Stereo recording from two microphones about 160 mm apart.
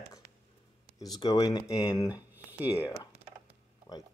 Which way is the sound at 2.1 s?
10° right (ahead or behind).